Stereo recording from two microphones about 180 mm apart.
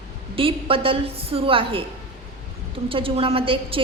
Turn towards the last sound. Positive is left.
turn(degrees=-30)  # may be behind; listen again after turning